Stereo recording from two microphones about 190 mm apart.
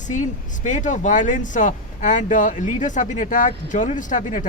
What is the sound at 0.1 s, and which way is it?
Speech, 40° left (ahead or behind).